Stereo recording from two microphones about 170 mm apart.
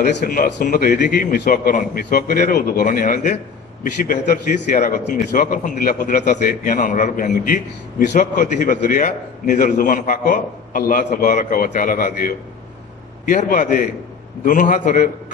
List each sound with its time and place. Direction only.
0.0 s a man's voice: 55° left (ahead or behind)